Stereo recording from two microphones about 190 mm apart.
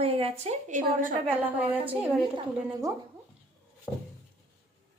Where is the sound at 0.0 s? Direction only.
30° right (ahead or behind).